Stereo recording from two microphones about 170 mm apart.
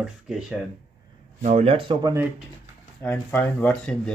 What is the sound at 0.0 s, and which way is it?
Speech, 5° right (ahead or behind).